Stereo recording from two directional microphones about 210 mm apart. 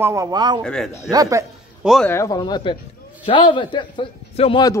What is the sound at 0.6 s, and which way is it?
Speech, 5° left (ahead or behind).